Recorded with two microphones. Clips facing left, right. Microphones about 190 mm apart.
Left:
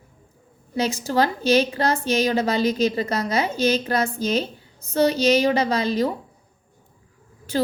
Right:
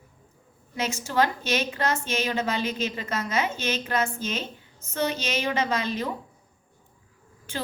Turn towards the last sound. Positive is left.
turn(degrees=35)  # may be behind; listen again after turning